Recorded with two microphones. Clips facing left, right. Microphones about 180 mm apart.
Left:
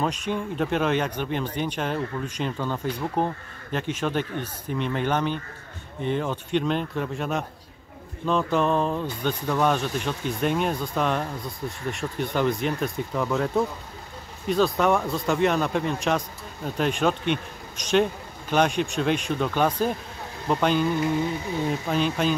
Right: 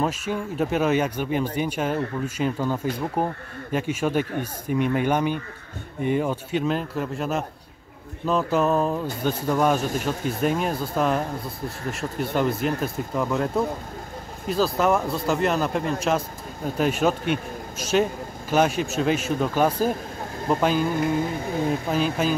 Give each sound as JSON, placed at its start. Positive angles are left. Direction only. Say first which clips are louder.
{"t": 0.0, "sound": "speech", "louder": "right 1 dB", "side_deg": -5}
{"t": 14.5, "sound": "speech", "louder": "even", "side_deg": 0}
{"t": 20.9, "sound": "music", "louder": "right 1 dB", "side_deg": -55}
{"t": 21.6, "sound": "speech", "louder": "right 1 dB", "side_deg": -5}